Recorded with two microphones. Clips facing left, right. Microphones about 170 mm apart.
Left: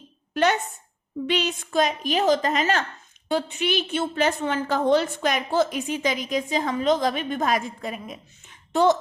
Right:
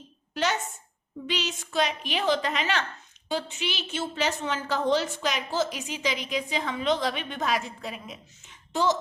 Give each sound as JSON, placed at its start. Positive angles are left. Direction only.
{"t": 0.3, "sound": "a sound", "side_deg": 55}
{"t": 1.3, "sound": "a woman's voice", "side_deg": 55}
{"t": 3.2, "sound": "a woman's voice", "side_deg": 55}